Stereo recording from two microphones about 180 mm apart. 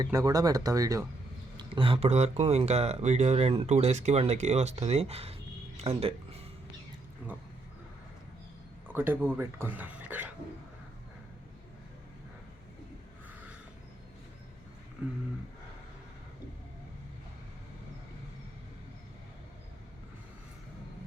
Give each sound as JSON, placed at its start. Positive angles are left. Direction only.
{"t": 0.0, "sound": "speech", "side_deg": -20}
{"t": 1.5, "sound": "speech", "side_deg": -30}
{"t": 7.2, "sound": "a sound", "side_deg": -10}
{"t": 8.9, "sound": "speech", "side_deg": -10}